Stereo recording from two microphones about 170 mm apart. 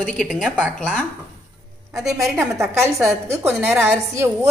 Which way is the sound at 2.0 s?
Centre (ahead or behind).